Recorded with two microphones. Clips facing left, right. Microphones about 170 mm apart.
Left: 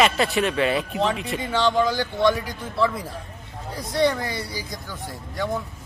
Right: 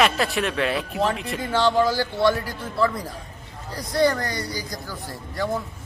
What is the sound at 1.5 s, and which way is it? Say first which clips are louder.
Speech: right 1 dB; 10° right (ahead or behind).